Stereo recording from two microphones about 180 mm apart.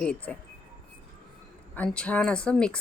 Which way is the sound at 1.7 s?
5° left (ahead or behind).